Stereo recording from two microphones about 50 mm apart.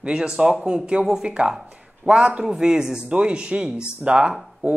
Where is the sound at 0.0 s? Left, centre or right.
Centre.